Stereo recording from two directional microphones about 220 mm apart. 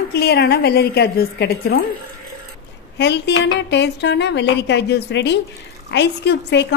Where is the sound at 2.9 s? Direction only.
50° left (ahead or behind).